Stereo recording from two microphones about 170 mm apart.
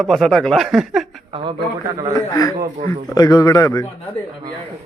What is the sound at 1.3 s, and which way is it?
Speech, 35° right (ahead or behind).